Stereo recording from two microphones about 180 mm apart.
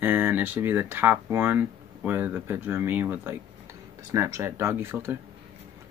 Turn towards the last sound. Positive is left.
turn(degrees=-15)  # may be behind; listen again after turning